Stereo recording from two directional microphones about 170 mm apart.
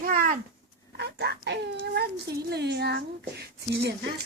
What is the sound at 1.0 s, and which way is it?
Speech, 75° right (ahead or behind).